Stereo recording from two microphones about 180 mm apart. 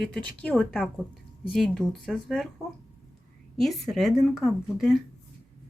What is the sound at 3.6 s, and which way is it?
A woman's voice, centre (ahead or behind).